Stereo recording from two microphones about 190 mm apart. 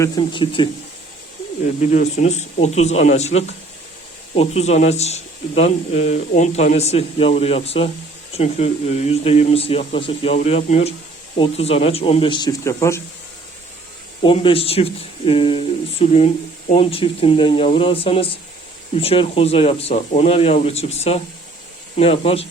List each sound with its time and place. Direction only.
0.0 s speech: 25° left (ahead or behind)
1.8 s speech: 40° left (ahead or behind); by 13.0 s 15° left (ahead or behind)
14.3 s speech: 30° left (ahead or behind)